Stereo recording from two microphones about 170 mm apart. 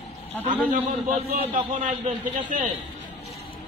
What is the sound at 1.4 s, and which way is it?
Speech, 35° right (ahead or behind).